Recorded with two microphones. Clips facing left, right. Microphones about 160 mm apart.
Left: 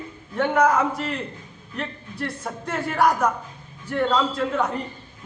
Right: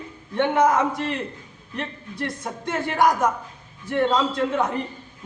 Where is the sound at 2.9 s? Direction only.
20° right (ahead or behind).